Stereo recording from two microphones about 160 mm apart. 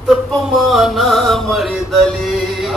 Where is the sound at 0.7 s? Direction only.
Centre (ahead or behind).